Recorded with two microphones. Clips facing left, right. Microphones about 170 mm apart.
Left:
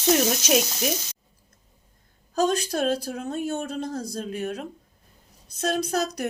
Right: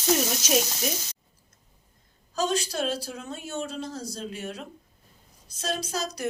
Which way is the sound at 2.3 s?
50° left (ahead or behind).